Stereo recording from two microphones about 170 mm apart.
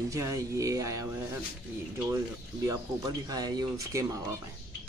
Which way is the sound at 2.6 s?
20° right (ahead or behind).